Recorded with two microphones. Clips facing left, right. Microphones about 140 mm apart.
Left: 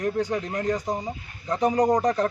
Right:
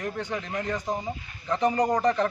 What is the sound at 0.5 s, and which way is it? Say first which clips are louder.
Speech: left 4 dB; 35° left (ahead or behind).